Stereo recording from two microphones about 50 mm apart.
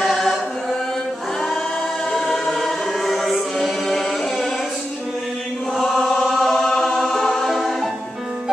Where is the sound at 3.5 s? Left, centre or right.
Centre.